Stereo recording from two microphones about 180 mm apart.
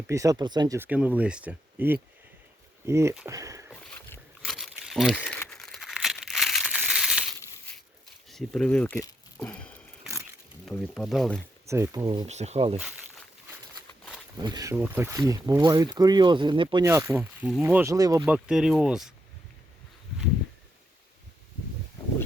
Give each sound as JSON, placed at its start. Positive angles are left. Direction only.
{"t": 0.1, "sound": "speech", "side_deg": -20}
{"t": 0.8, "sound": "speech", "side_deg": -10}
{"t": 3.9, "sound": "a sound", "side_deg": 5}
{"t": 8.3, "sound": "speech", "side_deg": 5}
{"t": 9.4, "sound": "a sound", "side_deg": 5}
{"t": 10.7, "sound": "speech", "side_deg": 0}
{"t": 11.6, "sound": "speech", "side_deg": -15}
{"t": 12.3, "sound": "speech", "side_deg": -40}
{"t": 14.3, "sound": "speech", "side_deg": -20}
{"t": 16.8, "sound": "speech", "side_deg": -15}
{"t": 18.3, "sound": "speech", "side_deg": -5}